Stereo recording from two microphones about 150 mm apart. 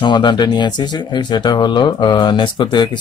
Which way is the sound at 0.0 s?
30° left (ahead or behind).